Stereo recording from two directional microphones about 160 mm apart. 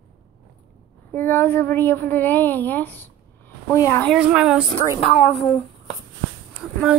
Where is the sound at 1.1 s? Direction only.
15° left (ahead or behind).